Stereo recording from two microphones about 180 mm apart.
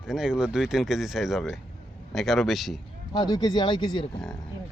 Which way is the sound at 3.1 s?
20° left (ahead or behind).